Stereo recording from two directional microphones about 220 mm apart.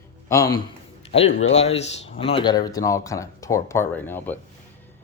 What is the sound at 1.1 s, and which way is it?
Speech, 25° left (ahead or behind).